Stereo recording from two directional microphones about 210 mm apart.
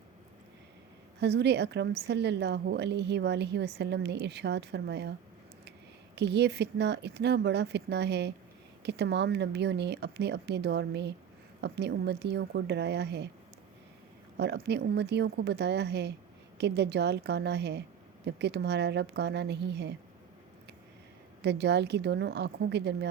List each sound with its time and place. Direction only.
1.2 s a woman's voice: 55° right (ahead or behind)
6.1 s a woman's voice: 55° right (ahead or behind)
14.3 s a woman's voice: 55° right (ahead or behind)
21.4 s a woman's voice: 55° right (ahead or behind)